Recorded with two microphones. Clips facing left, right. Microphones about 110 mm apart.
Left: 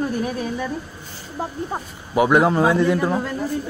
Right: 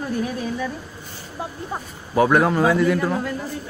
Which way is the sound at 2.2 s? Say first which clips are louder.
Left 1 dB; 20° left (ahead or behind).